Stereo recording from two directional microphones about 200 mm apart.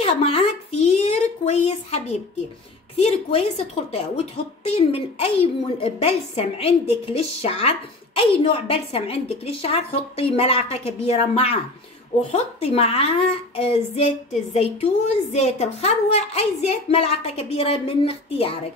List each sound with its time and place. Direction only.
0.0 s a woman's voice: 30° left (ahead or behind)